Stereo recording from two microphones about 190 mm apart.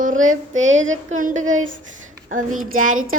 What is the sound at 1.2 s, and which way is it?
Speech, 45° right (ahead or behind).